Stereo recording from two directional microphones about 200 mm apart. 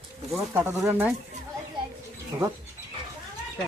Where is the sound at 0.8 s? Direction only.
10° right (ahead or behind).